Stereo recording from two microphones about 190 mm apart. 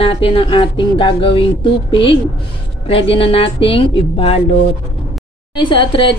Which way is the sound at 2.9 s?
30° left (ahead or behind).